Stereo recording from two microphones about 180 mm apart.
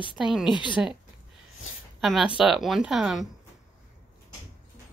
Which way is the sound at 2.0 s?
Centre (ahead or behind).